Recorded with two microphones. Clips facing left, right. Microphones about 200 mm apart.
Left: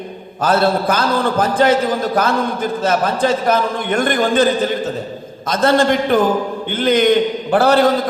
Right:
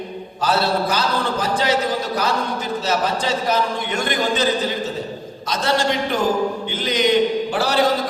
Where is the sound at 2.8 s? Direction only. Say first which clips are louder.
Left 6 dB; 55° left (ahead or behind).